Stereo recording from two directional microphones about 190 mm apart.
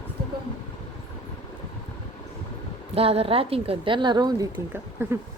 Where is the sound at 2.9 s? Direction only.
30° right (ahead or behind).